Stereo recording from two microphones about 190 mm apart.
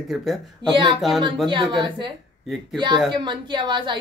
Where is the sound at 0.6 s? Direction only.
25° right (ahead or behind).